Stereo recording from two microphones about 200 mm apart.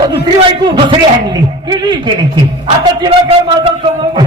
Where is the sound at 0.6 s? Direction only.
20° right (ahead or behind).